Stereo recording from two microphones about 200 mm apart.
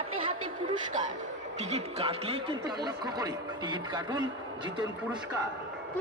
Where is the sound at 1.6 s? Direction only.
35° right (ahead or behind).